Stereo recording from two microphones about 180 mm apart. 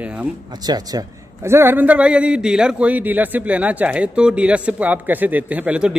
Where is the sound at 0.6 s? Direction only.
20° right (ahead or behind).